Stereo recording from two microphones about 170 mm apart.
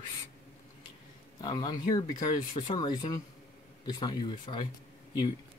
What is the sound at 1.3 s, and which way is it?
Speech, 25° left (ahead or behind).